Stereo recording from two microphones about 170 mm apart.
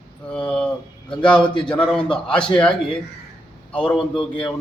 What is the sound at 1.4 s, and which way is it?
Speech, 25° left (ahead or behind).